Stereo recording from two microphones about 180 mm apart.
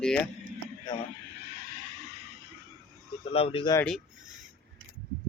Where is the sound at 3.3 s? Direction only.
30° left (ahead or behind).